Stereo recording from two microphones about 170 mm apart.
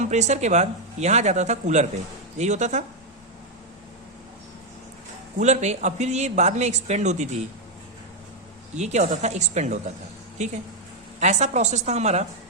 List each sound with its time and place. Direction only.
0.0 s speech: 40° right (ahead or behind)
5.4 s speech: 40° right (ahead or behind)
8.7 s a woman's voice: 40° right (ahead or behind)